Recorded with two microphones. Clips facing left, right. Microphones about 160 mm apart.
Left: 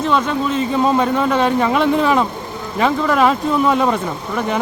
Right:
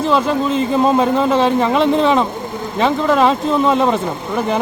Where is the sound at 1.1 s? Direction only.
30° right (ahead or behind).